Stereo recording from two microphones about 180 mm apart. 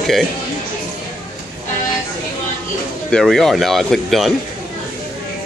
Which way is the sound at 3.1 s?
5° left (ahead or behind).